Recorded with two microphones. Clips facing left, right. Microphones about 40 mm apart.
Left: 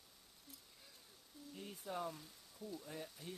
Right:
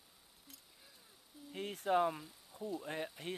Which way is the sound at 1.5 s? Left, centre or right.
Right.